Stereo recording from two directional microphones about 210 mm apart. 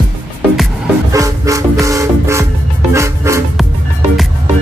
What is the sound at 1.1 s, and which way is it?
Music, 15° right (ahead or behind).